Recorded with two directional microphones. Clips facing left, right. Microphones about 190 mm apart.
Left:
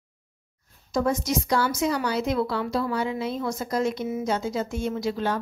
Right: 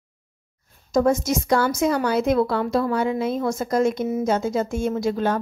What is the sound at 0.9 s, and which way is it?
A woman's voice, 45° right (ahead or behind).